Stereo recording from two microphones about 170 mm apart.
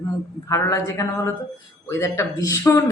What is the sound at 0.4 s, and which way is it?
Speech, 20° left (ahead or behind).